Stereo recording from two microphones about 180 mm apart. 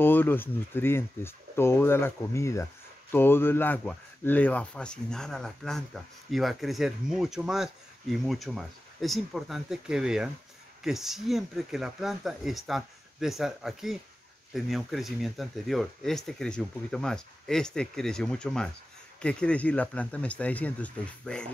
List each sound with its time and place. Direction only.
0.0 s speech: 10° left (ahead or behind)